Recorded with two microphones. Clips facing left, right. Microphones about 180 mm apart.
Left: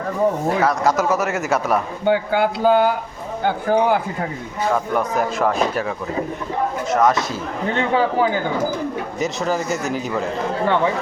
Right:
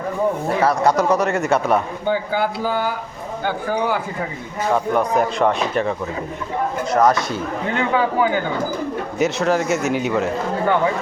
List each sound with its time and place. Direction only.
0.6 s speech: centre (ahead or behind)
2.0 s a man's voice: 55° left (ahead or behind)
4.7 s speech: centre (ahead or behind)
6.8 s speech: centre (ahead or behind)
7.7 s speech: 30° left (ahead or behind)
9.1 s speech: centre (ahead or behind)